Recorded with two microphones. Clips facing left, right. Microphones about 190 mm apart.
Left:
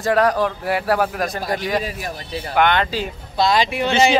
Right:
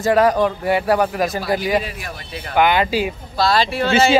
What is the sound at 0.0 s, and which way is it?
A man's voice, centre (ahead or behind).